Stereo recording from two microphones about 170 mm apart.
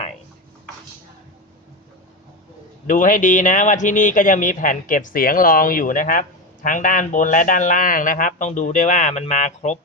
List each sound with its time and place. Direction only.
2.8 s speech: 50° left (ahead or behind)